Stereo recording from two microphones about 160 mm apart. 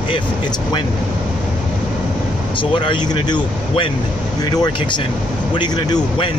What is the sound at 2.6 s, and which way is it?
Speech, 30° left (ahead or behind).